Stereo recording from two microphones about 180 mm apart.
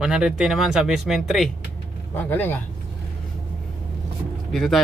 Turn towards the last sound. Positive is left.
turn(degrees=0)  # may be behind; listen again after turning